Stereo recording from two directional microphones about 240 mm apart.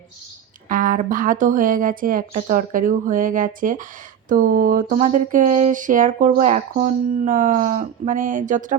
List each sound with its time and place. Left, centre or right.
0.7 s speech: right